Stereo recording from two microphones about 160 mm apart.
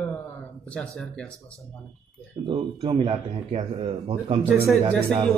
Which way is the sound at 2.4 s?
30° right (ahead or behind).